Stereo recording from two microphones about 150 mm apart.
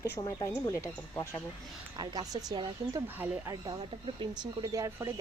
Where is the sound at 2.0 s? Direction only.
25° right (ahead or behind).